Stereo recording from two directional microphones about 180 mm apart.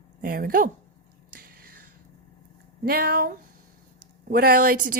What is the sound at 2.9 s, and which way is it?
A woman's voice, 55° right (ahead or behind).